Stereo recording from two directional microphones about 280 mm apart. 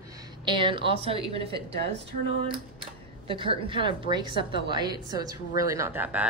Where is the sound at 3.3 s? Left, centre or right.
Centre.